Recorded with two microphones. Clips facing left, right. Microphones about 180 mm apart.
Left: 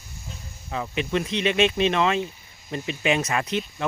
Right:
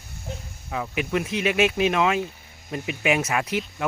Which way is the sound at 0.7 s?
5° right (ahead or behind).